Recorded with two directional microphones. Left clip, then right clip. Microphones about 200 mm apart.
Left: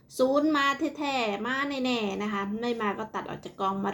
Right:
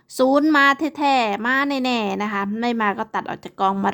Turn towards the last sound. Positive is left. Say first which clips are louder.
# right 9 dB
turn(degrees=-55)  # may be behind; listen again after turning